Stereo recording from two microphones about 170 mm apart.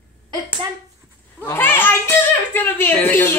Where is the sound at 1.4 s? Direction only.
10° left (ahead or behind).